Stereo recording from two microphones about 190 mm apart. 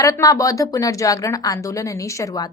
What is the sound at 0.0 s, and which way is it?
A woman's voice, 15° left (ahead or behind).